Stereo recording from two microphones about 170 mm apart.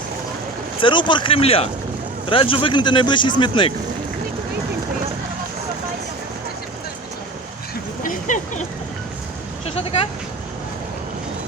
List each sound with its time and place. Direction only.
0.8 s speech: 30° left (ahead or behind)
8.0 s a sound: 50° left (ahead or behind)
9.6 s speech: 35° left (ahead or behind)